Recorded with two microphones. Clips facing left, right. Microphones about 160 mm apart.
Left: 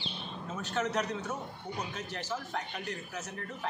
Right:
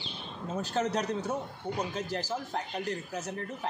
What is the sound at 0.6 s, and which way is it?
Speech, 35° right (ahead or behind).